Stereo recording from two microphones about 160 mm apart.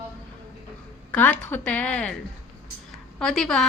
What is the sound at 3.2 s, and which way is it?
Speech, centre (ahead or behind).